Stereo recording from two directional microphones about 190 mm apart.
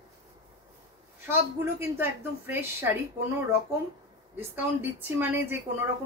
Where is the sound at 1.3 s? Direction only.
10° right (ahead or behind).